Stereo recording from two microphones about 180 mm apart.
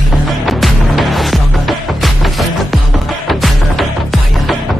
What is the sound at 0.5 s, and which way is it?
Music, centre (ahead or behind).